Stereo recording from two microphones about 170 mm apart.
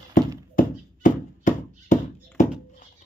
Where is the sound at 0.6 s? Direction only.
45° left (ahead or behind).